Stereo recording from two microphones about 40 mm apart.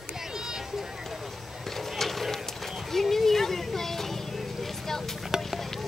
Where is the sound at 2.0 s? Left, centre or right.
Centre.